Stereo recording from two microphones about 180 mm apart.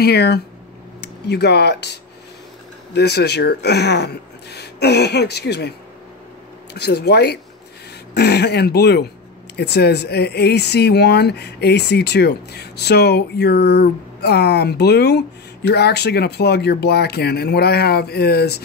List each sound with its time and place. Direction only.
0.0 s speech: 65° left (ahead or behind)